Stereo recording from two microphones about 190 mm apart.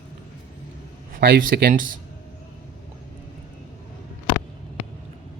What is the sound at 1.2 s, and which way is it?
Speech, 50° right (ahead or behind).